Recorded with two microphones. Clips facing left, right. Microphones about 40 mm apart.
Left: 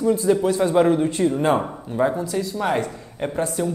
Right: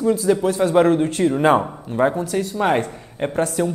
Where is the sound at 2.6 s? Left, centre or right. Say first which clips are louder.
Right 5 dB; right.